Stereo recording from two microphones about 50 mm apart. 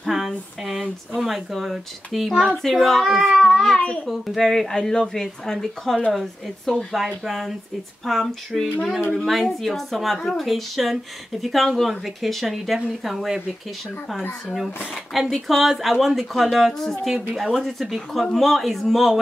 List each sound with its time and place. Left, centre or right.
0.0 s a sound: centre
0.7 s a woman's voice: centre
3.4 s speech: centre
3.8 s a child's voice: centre
4.4 s a woman's voice: centre
14.5 s a woman's voice: centre